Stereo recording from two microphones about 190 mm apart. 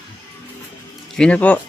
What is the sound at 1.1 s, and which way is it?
Speech, 5° left (ahead or behind).